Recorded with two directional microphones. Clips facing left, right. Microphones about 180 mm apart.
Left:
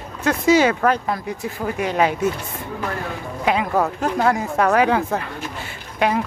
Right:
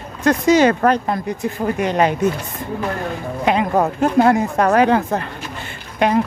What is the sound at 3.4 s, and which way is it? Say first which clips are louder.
Speech: right 3 dB; 5° left (ahead or behind).